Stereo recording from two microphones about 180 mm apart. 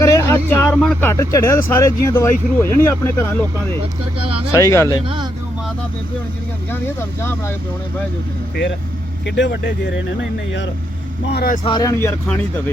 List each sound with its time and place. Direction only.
0.0 s a sound: 20° left (ahead or behind)
0.8 s speech: 5° left (ahead or behind)
1.1 s speech: 15° left (ahead or behind)
4.5 s speech: 15° left (ahead or behind)
5.0 s speech: 25° right (ahead or behind)
6.7 s speech: 10° left (ahead or behind)
9.2 s speech: 70° left (ahead or behind); by 10.7 s 90° left
11.3 s speech: 60° left (ahead or behind)
11.6 s speech: 20° left (ahead or behind)